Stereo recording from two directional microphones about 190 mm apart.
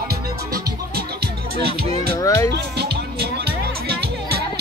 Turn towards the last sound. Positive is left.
turn(degrees=-55)  # may be behind; listen again after turning